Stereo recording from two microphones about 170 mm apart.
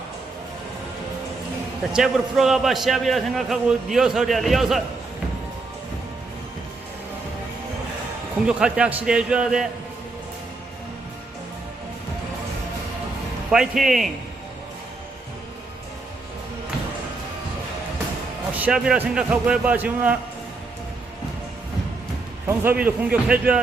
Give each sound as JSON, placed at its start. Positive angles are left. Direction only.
{"t": 1.9, "sound": "a man's voice", "side_deg": 0}
{"t": 8.4, "sound": "a man's voice", "side_deg": -5}
{"t": 13.5, "sound": "a man's voice", "side_deg": 0}
{"t": 18.5, "sound": "a man's voice", "side_deg": -5}
{"t": 22.4, "sound": "a man's voice", "side_deg": -10}